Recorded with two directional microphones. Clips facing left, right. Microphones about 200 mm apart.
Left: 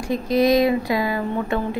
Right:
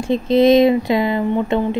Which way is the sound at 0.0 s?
25° right (ahead or behind).